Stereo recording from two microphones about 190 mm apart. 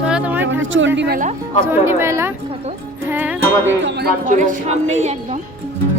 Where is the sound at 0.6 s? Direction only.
85° right.